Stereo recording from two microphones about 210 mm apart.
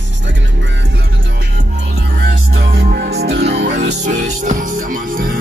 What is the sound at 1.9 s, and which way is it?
Music, 50° right (ahead or behind).